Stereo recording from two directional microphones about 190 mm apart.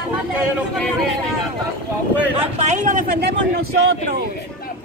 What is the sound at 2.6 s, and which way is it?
Speech, 40° right (ahead or behind).